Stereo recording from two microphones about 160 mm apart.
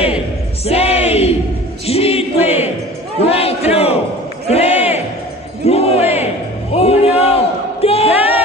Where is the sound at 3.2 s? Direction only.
40° left (ahead or behind).